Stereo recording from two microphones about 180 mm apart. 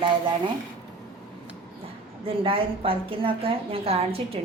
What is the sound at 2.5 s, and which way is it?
A woman's voice, 30° right (ahead or behind).